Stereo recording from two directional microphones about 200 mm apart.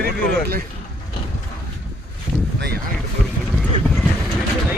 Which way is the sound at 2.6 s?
55° right (ahead or behind).